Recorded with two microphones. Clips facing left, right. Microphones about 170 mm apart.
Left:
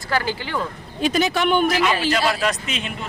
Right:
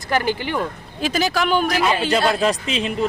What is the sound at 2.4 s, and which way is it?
Speech, 35° right (ahead or behind).